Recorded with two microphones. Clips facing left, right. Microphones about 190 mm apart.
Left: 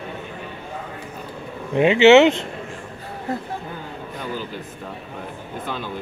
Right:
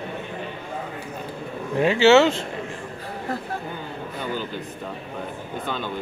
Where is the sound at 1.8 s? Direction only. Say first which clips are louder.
Left 4 dB; 20° left (ahead or behind).